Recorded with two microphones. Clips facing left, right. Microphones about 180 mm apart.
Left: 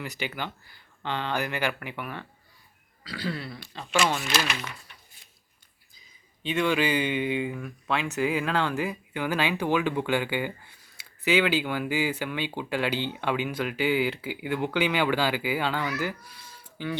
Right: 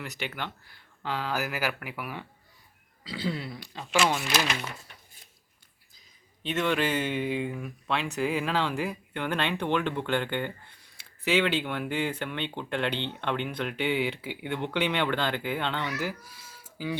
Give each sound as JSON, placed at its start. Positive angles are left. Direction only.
{"t": 0.0, "sound": "speech", "side_deg": 0}
{"t": 3.0, "sound": "speech", "side_deg": -20}
{"t": 6.4, "sound": "speech", "side_deg": 0}